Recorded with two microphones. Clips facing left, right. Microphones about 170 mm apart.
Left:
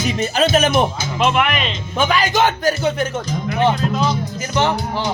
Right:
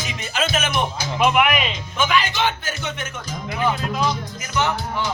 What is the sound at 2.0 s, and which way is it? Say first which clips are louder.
Speech: left 4 dB; 35° left (ahead or behind).